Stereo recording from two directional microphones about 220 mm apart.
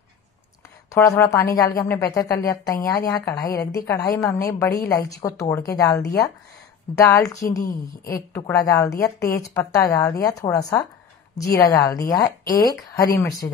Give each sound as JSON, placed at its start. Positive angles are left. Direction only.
{"t": 0.9, "sound": "a woman's voice", "side_deg": 10}